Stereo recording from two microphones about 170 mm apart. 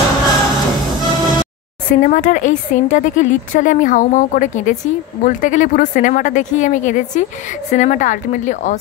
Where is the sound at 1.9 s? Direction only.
50° left (ahead or behind).